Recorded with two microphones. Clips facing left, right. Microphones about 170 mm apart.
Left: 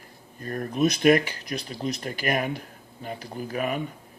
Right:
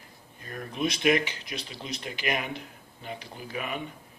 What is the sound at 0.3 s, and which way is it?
A man's voice, 45° left (ahead or behind).